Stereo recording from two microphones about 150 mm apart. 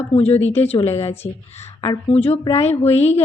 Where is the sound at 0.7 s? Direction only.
45° left (ahead or behind).